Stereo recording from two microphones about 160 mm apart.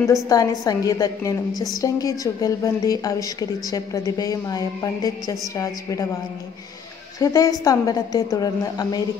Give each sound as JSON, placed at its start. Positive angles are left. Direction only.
{"t": 0.0, "sound": "a woman's voice", "side_deg": 20}
{"t": 7.2, "sound": "a woman's voice", "side_deg": 20}